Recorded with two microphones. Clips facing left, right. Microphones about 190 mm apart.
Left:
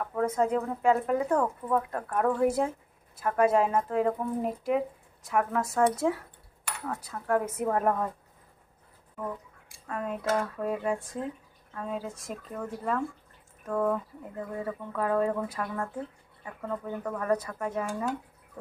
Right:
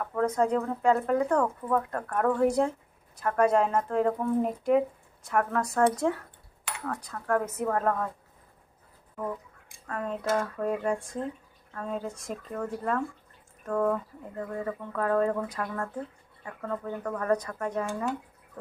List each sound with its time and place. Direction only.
0.0 s speech: 5° left (ahead or behind)
9.8 s speech: 10° left (ahead or behind)